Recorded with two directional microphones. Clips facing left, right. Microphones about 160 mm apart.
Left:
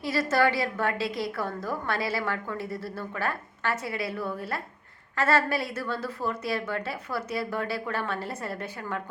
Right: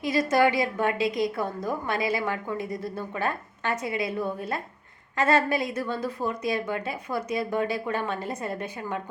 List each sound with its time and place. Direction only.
0.0 s a woman's voice: 15° right (ahead or behind)